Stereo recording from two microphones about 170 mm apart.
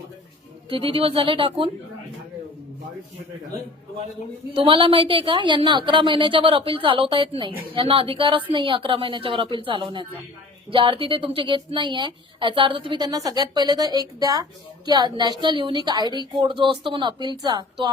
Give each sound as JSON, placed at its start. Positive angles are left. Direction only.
{"t": 0.7, "sound": "a woman's voice", "side_deg": -30}
{"t": 4.5, "sound": "a woman's voice", "side_deg": -30}